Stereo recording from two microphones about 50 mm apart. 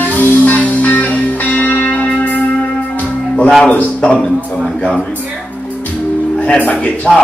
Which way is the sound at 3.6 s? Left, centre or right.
Left.